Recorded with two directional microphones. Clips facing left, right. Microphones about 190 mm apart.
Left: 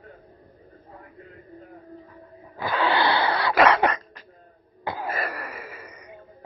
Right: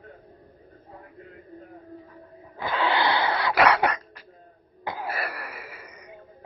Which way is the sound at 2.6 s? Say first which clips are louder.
Left 2 dB; 20° right (ahead or behind).